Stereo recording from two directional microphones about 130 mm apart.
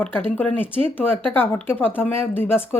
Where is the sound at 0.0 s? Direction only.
10° left (ahead or behind).